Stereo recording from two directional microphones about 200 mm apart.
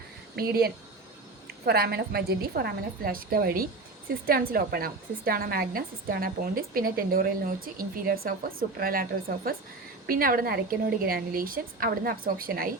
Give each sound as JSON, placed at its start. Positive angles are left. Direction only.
{"t": 0.3, "sound": "a woman's voice", "side_deg": -50}